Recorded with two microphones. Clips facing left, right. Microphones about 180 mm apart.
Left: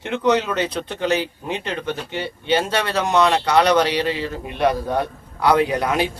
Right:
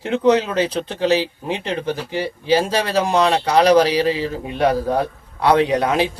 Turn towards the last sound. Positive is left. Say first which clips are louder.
# right 3 dB
turn(degrees=-30)  # may be behind; listen again after turning